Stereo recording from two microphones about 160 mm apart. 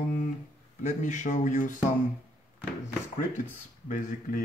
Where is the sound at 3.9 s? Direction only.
55° left (ahead or behind).